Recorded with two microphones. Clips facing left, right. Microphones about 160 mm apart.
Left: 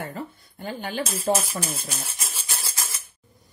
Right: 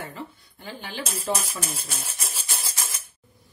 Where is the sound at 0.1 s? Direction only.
45° left (ahead or behind).